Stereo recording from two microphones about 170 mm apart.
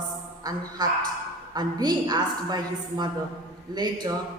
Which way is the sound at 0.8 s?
25° right (ahead or behind).